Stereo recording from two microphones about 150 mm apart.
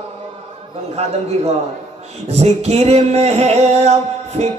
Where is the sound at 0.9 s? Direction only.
45° right (ahead or behind).